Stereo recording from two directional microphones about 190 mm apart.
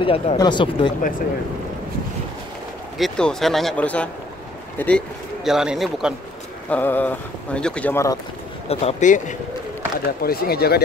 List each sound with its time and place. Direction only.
0.0 s speech: 30° left (ahead or behind)
3.0 s a man's voice: 5° left (ahead or behind)
6.7 s speech: 10° left (ahead or behind)
8.6 s speech: 35° left (ahead or behind)
10.2 s speech: 55° left (ahead or behind)